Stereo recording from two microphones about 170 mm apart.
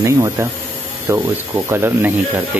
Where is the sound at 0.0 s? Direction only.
15° right (ahead or behind).